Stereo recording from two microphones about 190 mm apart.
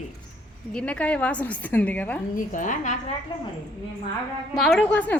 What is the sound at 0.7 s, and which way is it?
A woman's voice, 5° left (ahead or behind).